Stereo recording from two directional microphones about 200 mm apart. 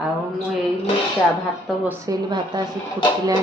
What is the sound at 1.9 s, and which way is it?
Speech, 20° right (ahead or behind).